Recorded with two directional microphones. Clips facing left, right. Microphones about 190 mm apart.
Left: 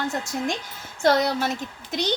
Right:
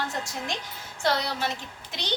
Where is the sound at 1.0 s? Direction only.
45° left (ahead or behind).